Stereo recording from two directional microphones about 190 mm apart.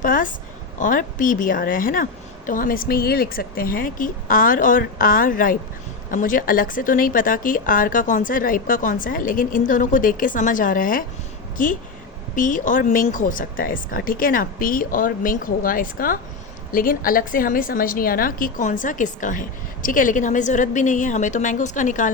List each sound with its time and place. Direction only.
0.0 s a woman's voice: 45° left (ahead or behind)